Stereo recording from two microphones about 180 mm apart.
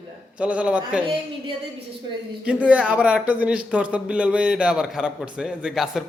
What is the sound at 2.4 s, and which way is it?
Speech, 5° right (ahead or behind).